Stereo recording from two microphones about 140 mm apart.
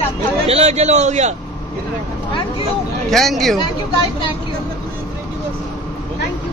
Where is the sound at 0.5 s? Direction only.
50° right (ahead or behind).